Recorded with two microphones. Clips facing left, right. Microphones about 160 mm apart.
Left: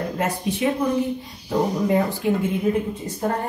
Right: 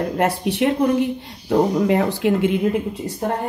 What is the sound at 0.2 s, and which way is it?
Speech, 70° right (ahead or behind).